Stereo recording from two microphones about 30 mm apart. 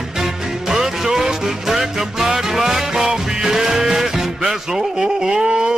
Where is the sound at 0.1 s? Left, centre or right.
Centre.